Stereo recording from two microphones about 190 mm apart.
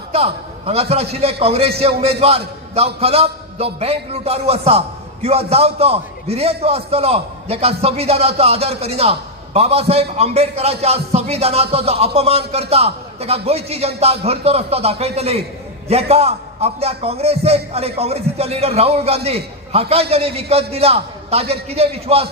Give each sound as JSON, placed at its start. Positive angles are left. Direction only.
{"t": 0.1, "sound": "a man's voice", "side_deg": -30}